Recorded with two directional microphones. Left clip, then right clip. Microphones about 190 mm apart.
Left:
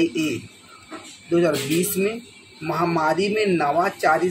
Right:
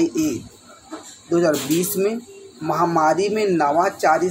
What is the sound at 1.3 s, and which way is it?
Speech, 10° right (ahead or behind).